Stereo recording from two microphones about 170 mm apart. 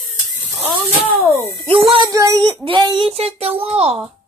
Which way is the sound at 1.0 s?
10° right (ahead or behind).